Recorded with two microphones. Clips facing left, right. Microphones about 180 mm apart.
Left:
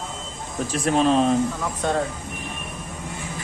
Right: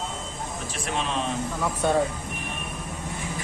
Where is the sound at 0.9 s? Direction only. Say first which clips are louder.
Left 10 dB; 40° left (ahead or behind).